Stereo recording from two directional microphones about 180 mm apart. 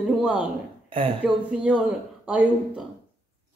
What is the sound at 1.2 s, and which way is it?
Speech, 5° right (ahead or behind).